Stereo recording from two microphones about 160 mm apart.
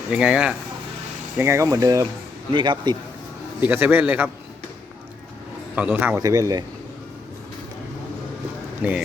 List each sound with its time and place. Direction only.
0.1 s a man's voice: 5° right (ahead or behind)
1.4 s speech: 15° right (ahead or behind)
3.6 s a man's voice: 10° right (ahead or behind)
5.7 s a man's voice: 10° right (ahead or behind)
6.1 s speech: 20° right (ahead or behind)
8.8 s a man's voice: 10° right (ahead or behind)